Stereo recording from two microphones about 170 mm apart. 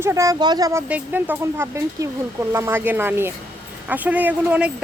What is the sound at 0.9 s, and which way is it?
Speech, 10° right (ahead or behind).